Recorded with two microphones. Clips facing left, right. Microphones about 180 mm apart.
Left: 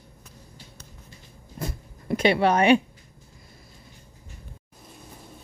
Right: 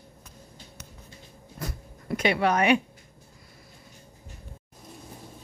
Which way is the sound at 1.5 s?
25° left (ahead or behind).